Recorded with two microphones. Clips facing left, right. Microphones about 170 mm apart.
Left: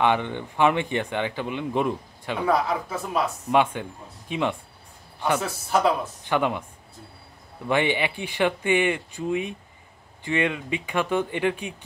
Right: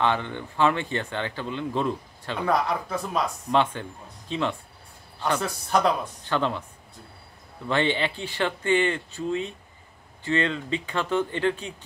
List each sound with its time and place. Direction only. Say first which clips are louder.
0.0 s speech: left 3 dB; 15° left (ahead or behind)
7.6 s speech: left 1 dB; 15° left (ahead or behind)